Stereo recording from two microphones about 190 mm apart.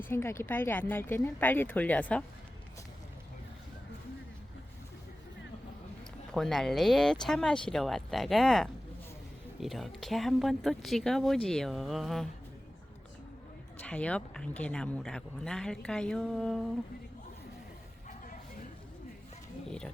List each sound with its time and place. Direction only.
0.1 s speech: 15° left (ahead or behind)
6.3 s speech: centre (ahead or behind)
13.8 s speech: 5° left (ahead or behind)